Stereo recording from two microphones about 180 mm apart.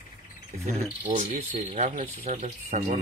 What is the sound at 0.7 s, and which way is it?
Speech, 40° right (ahead or behind).